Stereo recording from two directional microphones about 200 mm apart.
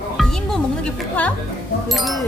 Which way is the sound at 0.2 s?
Centre (ahead or behind).